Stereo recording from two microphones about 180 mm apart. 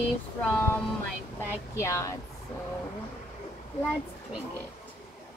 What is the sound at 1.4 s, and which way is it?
Speech, 15° left (ahead or behind).